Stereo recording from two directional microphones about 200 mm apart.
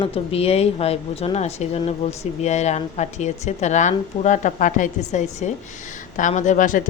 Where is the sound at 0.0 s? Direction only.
30° left (ahead or behind).